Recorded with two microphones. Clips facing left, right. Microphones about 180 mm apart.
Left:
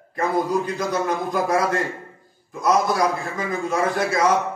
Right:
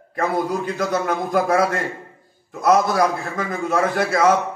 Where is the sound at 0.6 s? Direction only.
55° right (ahead or behind).